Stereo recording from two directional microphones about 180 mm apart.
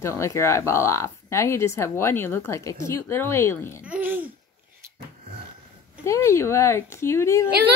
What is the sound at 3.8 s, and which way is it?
Speech, 10° right (ahead or behind).